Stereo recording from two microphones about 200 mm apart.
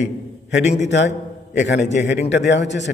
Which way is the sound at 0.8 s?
60° left (ahead or behind).